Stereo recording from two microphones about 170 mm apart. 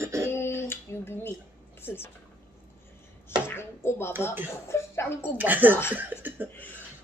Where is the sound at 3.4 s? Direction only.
15° left (ahead or behind).